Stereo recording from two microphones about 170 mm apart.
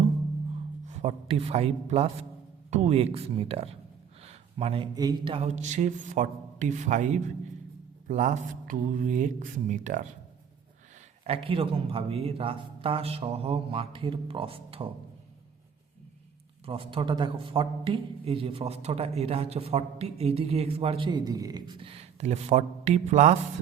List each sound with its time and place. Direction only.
0.9 s a man's voice: 40° right (ahead or behind)
4.2 s a sound: 35° right (ahead or behind)
4.9 s a man's voice: 25° right (ahead or behind); by 10.1 s 45° right (ahead or behind)
11.2 s a man's voice: 35° right (ahead or behind)
16.6 s a man's voice: 30° right (ahead or behind)